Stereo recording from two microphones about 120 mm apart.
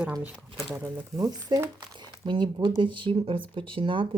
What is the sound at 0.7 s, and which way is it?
Speech, 25° right (ahead or behind).